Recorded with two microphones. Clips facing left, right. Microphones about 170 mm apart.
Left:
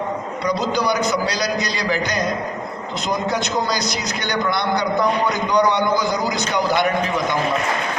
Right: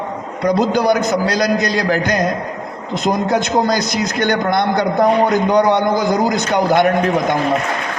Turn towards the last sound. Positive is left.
turn(degrees=-55)  # may be behind; listen again after turning